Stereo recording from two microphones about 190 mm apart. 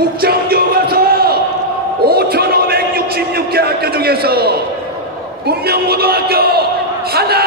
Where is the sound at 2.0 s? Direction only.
55° right (ahead or behind).